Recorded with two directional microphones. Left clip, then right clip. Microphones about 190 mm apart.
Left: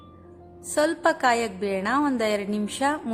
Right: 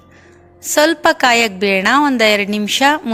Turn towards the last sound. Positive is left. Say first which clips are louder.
# right 12 dB
turn(degrees=-25)  # may be behind; listen again after turning